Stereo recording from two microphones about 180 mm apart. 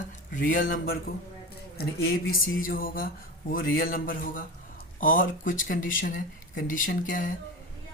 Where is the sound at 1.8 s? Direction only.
60° left (ahead or behind).